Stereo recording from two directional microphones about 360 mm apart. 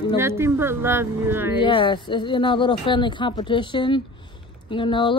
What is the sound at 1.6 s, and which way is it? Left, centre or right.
Speech, centre.